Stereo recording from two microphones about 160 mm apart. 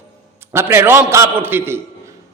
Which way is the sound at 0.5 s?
15° right (ahead or behind).